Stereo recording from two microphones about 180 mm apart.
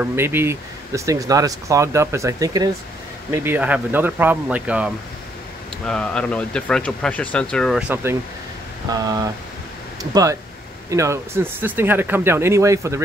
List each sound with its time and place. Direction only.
0.0 s speech: 10° right (ahead or behind)
5.9 s speech: 5° left (ahead or behind)
7.9 s speech: 15° right (ahead or behind)
10.9 s speech: 15° right (ahead or behind)